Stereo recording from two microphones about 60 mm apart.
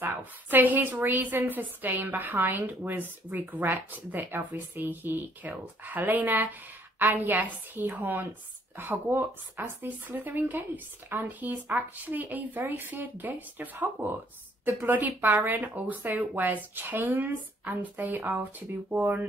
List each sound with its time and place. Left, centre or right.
0.0 s a woman's voice: right